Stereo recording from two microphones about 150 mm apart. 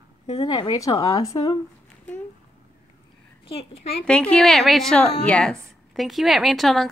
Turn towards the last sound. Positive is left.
turn(degrees=0)  # may be behind; listen again after turning